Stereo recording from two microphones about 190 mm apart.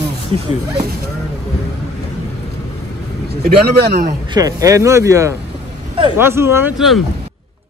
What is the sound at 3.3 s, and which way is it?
Speech, 55° right (ahead or behind).